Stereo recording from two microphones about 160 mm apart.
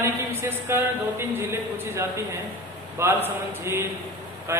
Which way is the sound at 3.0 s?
15° right (ahead or behind).